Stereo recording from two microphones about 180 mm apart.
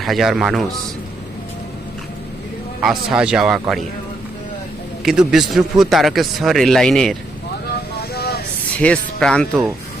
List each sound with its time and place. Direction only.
0.0 s a man's voice: centre (ahead or behind)
2.8 s a man's voice: centre (ahead or behind)
5.0 s a man's voice: 5° right (ahead or behind)
8.1 s vehicle: 60° left (ahead or behind)
8.8 s a man's voice: 5° left (ahead or behind)